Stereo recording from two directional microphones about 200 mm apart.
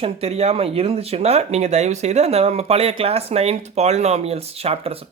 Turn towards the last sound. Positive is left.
turn(degrees=-30)  # may be behind; listen again after turning